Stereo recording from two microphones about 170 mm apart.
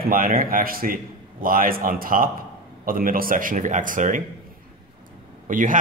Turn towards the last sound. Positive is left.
turn(degrees=-50)  # may be behind; listen again after turning